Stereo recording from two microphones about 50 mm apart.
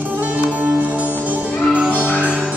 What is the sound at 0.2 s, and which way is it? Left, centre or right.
Music, right.